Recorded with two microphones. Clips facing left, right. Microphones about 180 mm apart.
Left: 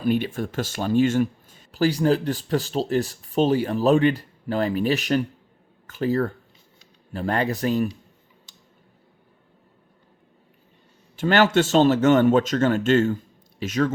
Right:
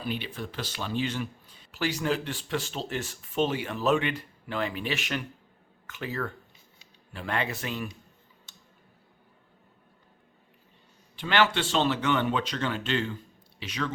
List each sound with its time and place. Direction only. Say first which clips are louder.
0.0 s speech: left 11 dB; 50° left (ahead or behind)
11.2 s speech: left 7 dB; 45° left (ahead or behind)